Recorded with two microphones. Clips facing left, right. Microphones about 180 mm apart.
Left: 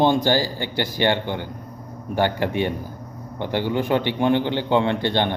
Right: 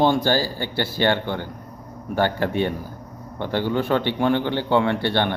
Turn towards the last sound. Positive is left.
turn(degrees=20)  # may be behind; listen again after turning